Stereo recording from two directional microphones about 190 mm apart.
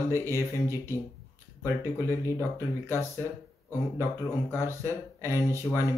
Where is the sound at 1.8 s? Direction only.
15° left (ahead or behind).